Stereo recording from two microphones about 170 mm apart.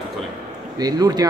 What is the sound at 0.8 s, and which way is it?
Speech, 20° right (ahead or behind).